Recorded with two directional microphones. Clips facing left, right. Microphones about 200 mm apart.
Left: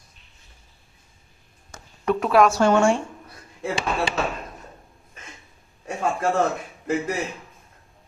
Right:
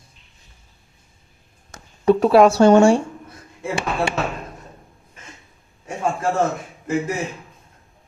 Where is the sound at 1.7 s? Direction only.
30° right (ahead or behind).